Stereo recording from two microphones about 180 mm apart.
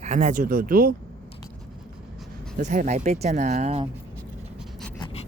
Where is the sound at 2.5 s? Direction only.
45° right (ahead or behind).